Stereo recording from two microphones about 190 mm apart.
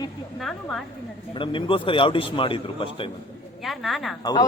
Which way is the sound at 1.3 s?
25° left (ahead or behind).